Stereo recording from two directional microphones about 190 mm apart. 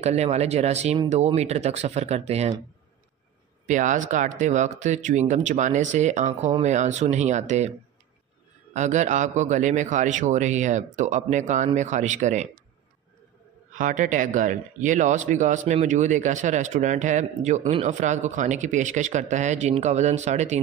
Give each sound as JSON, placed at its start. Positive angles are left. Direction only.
{"t": 0.0, "sound": "speech", "side_deg": -35}
{"t": 3.6, "sound": "speech", "side_deg": -40}
{"t": 8.7, "sound": "speech", "side_deg": -40}
{"t": 13.7, "sound": "speech", "side_deg": -40}